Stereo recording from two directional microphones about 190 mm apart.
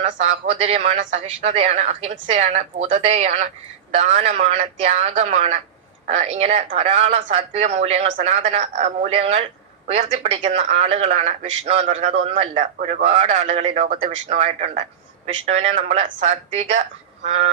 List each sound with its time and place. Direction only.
0.0 s speech: 35° right (ahead or behind)